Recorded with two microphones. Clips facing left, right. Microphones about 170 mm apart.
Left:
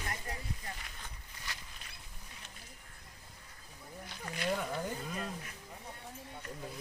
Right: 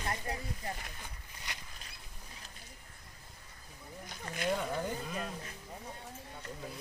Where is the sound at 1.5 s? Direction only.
20° right (ahead or behind).